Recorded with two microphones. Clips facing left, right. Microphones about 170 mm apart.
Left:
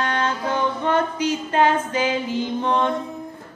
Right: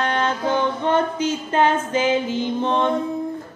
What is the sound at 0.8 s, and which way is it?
Music, 30° right (ahead or behind).